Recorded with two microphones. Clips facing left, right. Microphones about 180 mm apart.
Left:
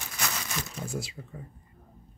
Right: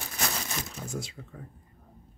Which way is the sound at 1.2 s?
10° left (ahead or behind).